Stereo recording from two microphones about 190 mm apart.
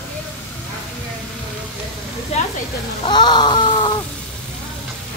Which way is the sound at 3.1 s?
25° left (ahead or behind).